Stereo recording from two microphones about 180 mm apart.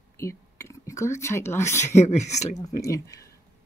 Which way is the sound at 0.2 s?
15° left (ahead or behind).